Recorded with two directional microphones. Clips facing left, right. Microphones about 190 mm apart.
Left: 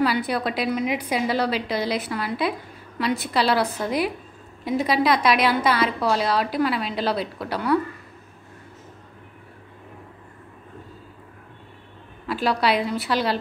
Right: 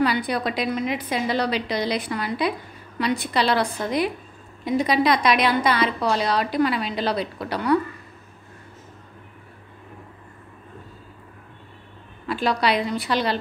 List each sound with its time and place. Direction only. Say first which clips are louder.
0.0 s a woman's voice: even; 5° left (ahead or behind)
12.3 s a woman's voice: even; 5° left (ahead or behind)